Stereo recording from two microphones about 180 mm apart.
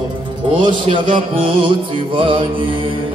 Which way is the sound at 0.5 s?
25° right (ahead or behind).